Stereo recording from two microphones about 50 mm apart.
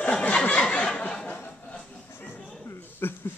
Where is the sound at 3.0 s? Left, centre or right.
Left.